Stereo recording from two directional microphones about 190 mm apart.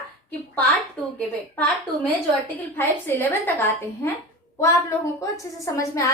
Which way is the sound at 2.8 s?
10° left (ahead or behind).